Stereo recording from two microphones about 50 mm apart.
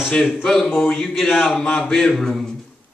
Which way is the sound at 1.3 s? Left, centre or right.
Centre.